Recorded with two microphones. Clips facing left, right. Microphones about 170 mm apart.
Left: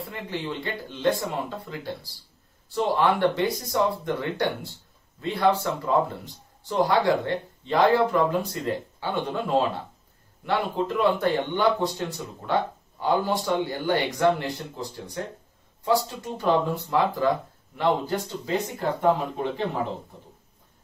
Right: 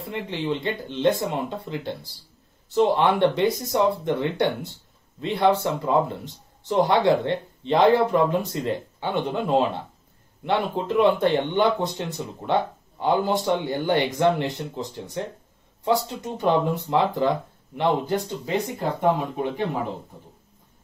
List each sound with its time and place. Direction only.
0.0 s speech: 20° right (ahead or behind)